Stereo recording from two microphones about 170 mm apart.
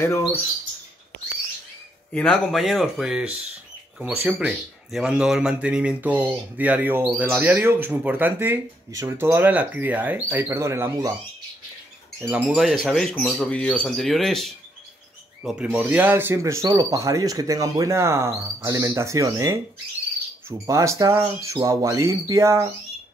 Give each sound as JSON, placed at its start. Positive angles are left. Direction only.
{"t": 0.0, "sound": "speech", "side_deg": 15}
{"t": 2.1, "sound": "speech", "side_deg": 5}
{"t": 12.2, "sound": "speech", "side_deg": -5}